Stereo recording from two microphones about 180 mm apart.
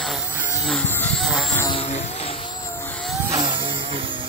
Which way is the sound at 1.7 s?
35° left (ahead or behind).